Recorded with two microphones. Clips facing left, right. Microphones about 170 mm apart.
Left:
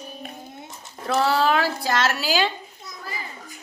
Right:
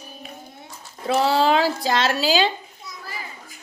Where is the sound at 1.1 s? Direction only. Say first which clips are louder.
Right 2 dB; 20° right (ahead or behind).